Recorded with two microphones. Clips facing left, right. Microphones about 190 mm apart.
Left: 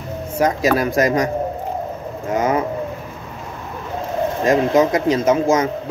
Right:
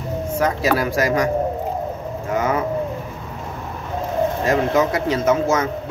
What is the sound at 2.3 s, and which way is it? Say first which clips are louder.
Speech: left 2 dB; 20° left (ahead or behind).